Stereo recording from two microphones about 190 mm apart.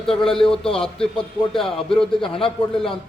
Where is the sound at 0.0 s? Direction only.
5° left (ahead or behind).